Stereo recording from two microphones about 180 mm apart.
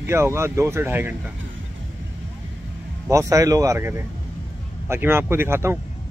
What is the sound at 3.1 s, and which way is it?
A man's voice, 15° right (ahead or behind).